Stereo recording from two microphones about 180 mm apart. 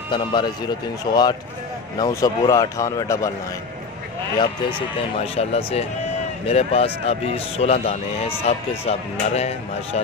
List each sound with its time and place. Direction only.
0.1 s speech: 25° left (ahead or behind)
4.4 s speech: 25° left (ahead or behind)